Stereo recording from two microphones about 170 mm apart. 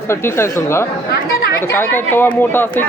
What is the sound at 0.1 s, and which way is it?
Speech, 15° left (ahead or behind).